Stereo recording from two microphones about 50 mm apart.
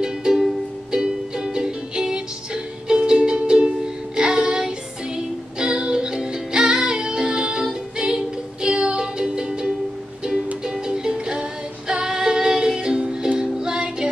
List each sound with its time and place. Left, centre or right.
0.0 s music: centre